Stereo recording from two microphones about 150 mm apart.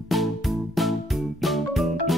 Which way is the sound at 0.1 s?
Centre (ahead or behind).